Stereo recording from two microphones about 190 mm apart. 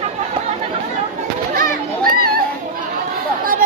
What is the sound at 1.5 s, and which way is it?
Children playing, 50° right (ahead or behind).